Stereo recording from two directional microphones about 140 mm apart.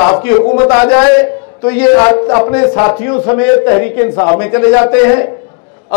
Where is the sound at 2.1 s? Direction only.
30° left (ahead or behind).